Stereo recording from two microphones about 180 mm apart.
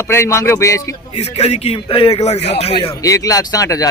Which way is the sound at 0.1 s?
15° left (ahead or behind).